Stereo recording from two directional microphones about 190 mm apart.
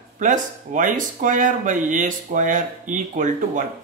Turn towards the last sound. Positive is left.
turn(degrees=-45)  # may be behind; listen again after turning